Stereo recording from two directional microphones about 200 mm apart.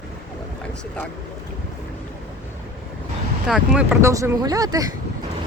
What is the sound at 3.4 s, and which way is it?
Speech, centre (ahead or behind).